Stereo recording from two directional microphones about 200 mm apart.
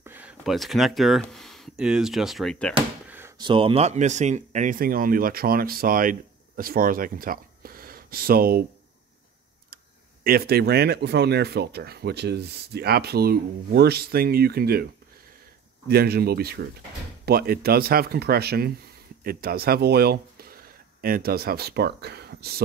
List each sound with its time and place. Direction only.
0.0 s speech: 10° right (ahead or behind)
3.1 s drawer open or close: 10° right (ahead or behind)
3.3 s speech: 25° right (ahead or behind); by 8.6 s 50° right (ahead or behind)
10.2 s speech: 50° right (ahead or behind)
15.9 s speech: 50° right (ahead or behind)